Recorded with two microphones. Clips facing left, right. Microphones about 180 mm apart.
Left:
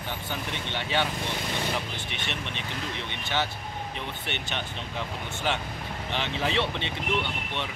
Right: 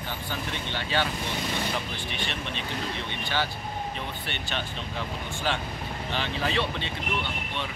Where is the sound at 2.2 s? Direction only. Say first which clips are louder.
Right 2 dB; 20° left (ahead or behind).